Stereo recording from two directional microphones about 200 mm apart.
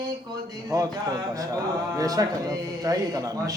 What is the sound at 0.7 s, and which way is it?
Speech, 15° right (ahead or behind).